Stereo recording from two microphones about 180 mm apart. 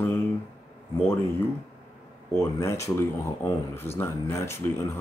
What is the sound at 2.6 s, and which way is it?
Speech, 15° left (ahead or behind).